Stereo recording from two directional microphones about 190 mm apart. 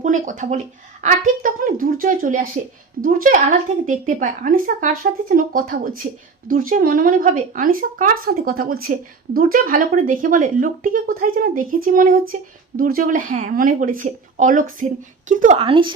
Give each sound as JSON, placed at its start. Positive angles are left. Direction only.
{"t": 0.0, "sound": "speech", "side_deg": -40}
{"t": 15.5, "sound": "speech", "side_deg": -25}